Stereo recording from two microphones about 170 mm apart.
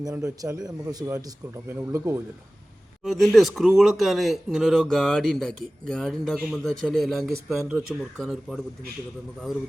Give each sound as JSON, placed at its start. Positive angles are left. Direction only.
{"t": 0.0, "sound": "a man's voice", "side_deg": -20}
{"t": 3.0, "sound": "speech", "side_deg": 0}